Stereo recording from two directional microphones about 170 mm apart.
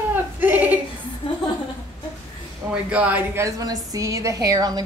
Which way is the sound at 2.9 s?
10° right (ahead or behind).